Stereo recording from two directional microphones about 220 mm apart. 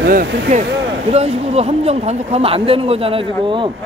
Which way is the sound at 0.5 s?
30° right (ahead or behind).